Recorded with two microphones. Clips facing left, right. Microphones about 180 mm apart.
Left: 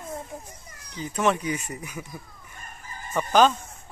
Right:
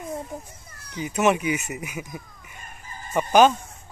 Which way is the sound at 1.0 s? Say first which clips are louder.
Right 3 dB; 10° right (ahead or behind).